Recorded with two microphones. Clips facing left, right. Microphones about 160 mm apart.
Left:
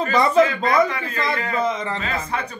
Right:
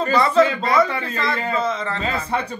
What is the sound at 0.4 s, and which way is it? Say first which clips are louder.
Speech: even; 30° right (ahead or behind).